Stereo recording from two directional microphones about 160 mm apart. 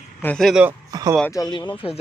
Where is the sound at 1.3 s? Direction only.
25° left (ahead or behind).